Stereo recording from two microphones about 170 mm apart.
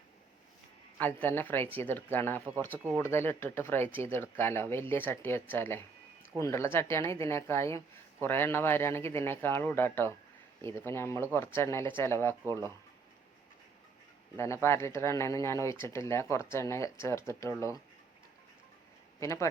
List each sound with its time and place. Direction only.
0.9 s speech: 10° left (ahead or behind)
14.3 s speech: 15° left (ahead or behind)
19.2 s speech: 15° left (ahead or behind)